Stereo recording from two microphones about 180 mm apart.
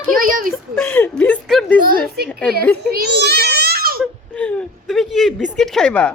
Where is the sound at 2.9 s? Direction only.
65° right (ahead or behind).